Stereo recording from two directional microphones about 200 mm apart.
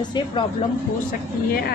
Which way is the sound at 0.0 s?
25° left (ahead or behind).